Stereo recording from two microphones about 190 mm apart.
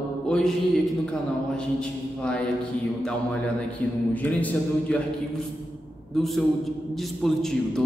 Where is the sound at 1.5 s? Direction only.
5° left (ahead or behind).